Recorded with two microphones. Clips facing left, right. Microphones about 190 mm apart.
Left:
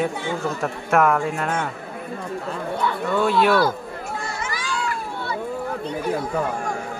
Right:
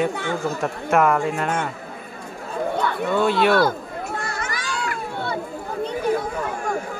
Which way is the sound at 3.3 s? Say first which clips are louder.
Left 1 dB; centre (ahead or behind).